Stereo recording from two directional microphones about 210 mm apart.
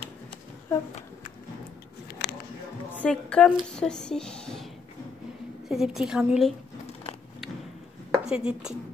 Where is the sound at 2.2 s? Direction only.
50° left (ahead or behind).